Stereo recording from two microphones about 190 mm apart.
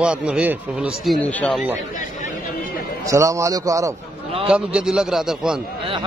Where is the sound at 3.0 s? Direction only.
15° right (ahead or behind).